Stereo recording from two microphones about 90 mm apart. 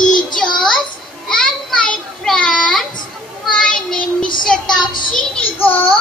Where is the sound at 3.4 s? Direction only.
5° left (ahead or behind).